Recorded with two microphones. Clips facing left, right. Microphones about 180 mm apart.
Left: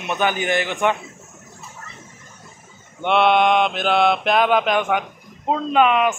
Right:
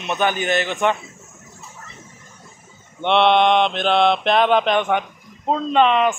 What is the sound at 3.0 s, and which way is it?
Mantra, 5° left (ahead or behind).